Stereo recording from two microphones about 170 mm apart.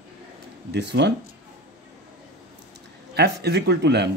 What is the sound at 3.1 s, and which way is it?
Speech, 80° right.